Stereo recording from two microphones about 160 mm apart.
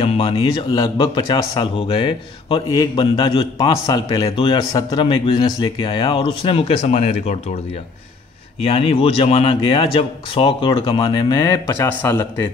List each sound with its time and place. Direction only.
0.0 s a man's voice: 35° left (ahead or behind)
8.5 s a man's voice: 35° left (ahead or behind); by 12.4 s 15° left (ahead or behind)